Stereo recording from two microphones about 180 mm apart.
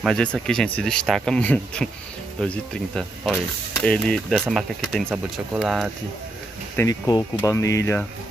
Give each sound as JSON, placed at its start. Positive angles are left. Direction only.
{"t": 0.0, "sound": "speech", "side_deg": 5}
{"t": 6.8, "sound": "speech", "side_deg": 20}